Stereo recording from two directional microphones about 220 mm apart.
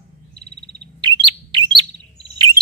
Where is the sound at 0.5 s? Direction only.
45° right (ahead or behind).